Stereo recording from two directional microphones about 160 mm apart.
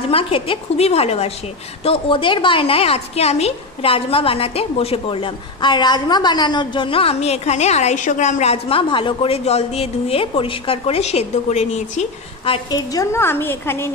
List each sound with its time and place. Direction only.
0.1 s a woman's voice: 35° left (ahead or behind)
12.9 s a woman's voice: 20° left (ahead or behind)